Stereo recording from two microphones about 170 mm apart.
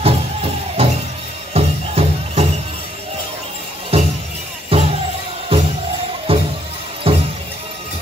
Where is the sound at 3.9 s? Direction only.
35° right (ahead or behind).